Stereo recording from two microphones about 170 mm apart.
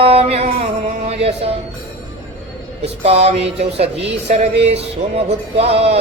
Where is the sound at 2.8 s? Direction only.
35° right (ahead or behind).